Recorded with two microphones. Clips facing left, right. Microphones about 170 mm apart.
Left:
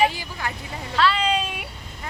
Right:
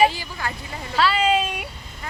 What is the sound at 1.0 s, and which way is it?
Speech, 5° right (ahead or behind).